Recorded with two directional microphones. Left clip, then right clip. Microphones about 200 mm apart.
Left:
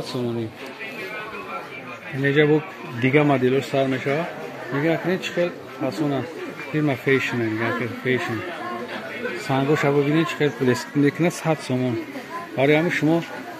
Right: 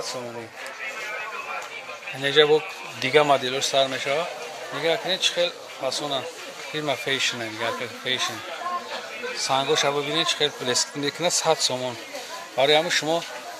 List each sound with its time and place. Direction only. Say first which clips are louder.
2.2 s speech: even; 30° right (ahead or behind)
6.7 s speech: left 4 dB; 20° right (ahead or behind)
9.5 s speech: left 1 dB; 15° right (ahead or behind)